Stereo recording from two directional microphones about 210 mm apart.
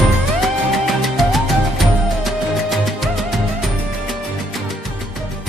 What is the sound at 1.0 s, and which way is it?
Music, centre (ahead or behind).